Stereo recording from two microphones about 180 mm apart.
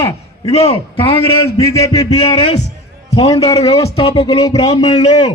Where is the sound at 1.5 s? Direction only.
20° left (ahead or behind).